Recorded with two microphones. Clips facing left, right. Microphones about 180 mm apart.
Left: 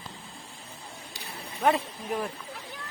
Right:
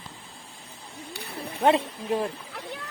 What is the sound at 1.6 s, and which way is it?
Speech, 30° right (ahead or behind).